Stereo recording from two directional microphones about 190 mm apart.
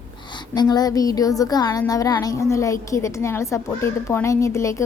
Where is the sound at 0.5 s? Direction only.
20° left (ahead or behind).